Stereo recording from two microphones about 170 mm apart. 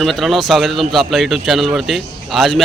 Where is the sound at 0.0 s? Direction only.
Centre (ahead or behind).